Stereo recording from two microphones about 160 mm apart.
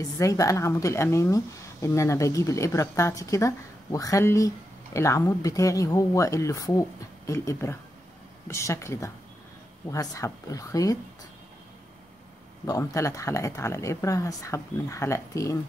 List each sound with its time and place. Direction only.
0.0 s speech: 20° left (ahead or behind)
12.6 s speech: 20° left (ahead or behind)